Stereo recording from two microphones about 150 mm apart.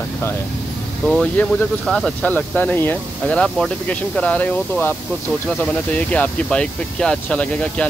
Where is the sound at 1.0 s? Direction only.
5° left (ahead or behind).